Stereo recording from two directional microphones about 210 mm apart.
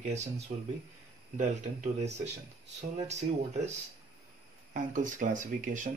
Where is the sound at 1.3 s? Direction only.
35° right (ahead or behind).